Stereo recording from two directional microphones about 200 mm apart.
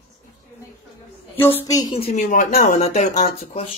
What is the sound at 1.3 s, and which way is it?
Speech, 10° left (ahead or behind).